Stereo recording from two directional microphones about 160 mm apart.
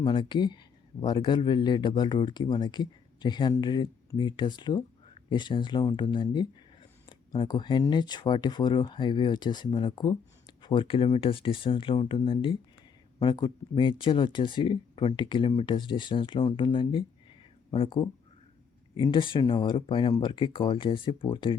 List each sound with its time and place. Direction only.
0.0 s speech: 30° left (ahead or behind)